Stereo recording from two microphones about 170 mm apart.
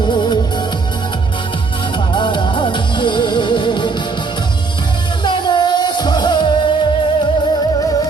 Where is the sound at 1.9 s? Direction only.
30° left (ahead or behind).